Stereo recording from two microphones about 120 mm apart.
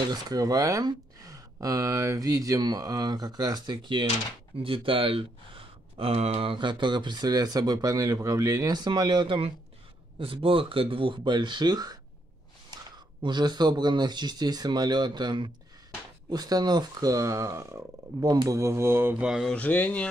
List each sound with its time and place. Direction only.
0.1 s speech: 30° right (ahead or behind)
19.2 s speech: 5° right (ahead or behind)
19.5 s speech: 15° left (ahead or behind)